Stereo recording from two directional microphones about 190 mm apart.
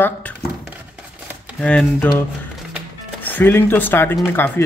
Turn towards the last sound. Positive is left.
turn(degrees=10)  # may be behind; listen again after turning